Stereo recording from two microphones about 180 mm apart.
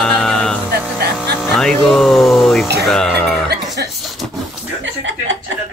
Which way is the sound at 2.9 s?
5° left (ahead or behind).